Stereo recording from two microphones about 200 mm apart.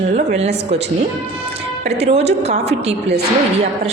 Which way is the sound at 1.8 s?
30° right (ahead or behind).